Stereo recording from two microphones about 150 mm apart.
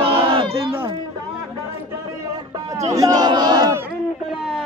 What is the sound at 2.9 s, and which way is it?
Battle cry, 25° right (ahead or behind).